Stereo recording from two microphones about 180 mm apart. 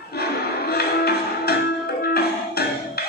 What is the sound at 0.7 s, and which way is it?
Music, 60° left (ahead or behind).